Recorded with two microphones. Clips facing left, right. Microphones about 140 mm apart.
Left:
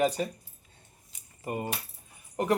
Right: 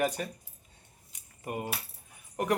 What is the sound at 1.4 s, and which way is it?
Speech, 5° right (ahead or behind).